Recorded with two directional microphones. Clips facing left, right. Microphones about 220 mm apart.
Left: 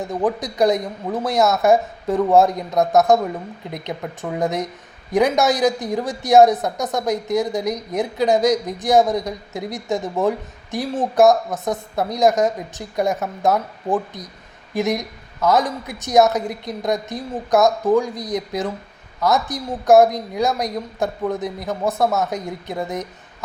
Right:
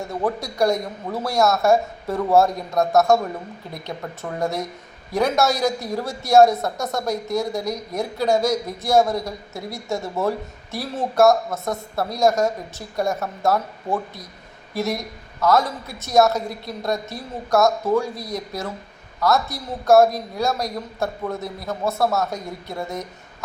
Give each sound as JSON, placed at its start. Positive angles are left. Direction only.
{"t": 0.0, "sound": "speech", "side_deg": 15}